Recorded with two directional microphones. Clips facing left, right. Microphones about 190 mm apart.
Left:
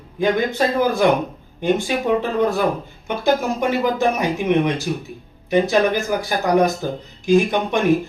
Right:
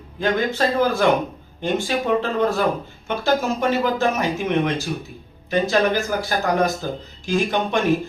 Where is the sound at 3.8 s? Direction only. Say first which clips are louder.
Left 2 dB; 15° left (ahead or behind).